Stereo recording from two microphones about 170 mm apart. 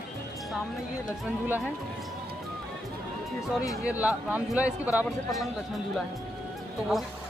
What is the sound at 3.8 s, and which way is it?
Speech, 10° right (ahead or behind).